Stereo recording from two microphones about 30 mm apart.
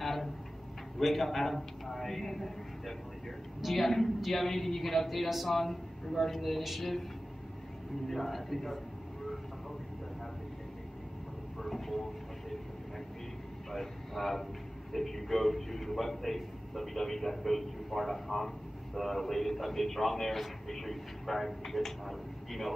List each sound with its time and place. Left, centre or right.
0.0 s a sound: centre
0.9 s a man's voice: centre
3.6 s a man's voice: centre
8.1 s a man's voice: centre
11.6 s vehicle: centre
13.7 s a man's voice: centre